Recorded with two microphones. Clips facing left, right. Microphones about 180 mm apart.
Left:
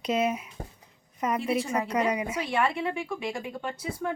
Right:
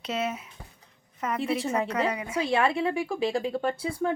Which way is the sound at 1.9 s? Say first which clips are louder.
Left 1 dB; 15° left (ahead or behind).